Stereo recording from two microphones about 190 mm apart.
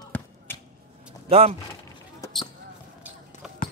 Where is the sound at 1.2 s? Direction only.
30° right (ahead or behind).